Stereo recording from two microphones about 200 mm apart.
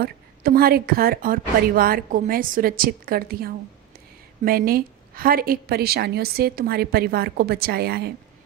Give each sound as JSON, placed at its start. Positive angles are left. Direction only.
{"t": 0.0, "sound": "a woman's voice", "side_deg": -50}